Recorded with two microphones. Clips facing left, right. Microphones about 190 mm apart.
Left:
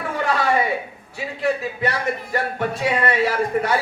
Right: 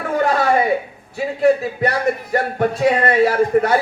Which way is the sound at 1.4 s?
45° right (ahead or behind).